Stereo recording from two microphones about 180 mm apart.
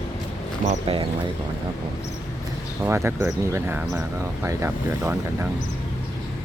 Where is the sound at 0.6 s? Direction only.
30° right (ahead or behind).